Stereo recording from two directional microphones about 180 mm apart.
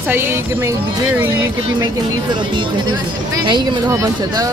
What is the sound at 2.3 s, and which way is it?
Speech, 25° right (ahead or behind).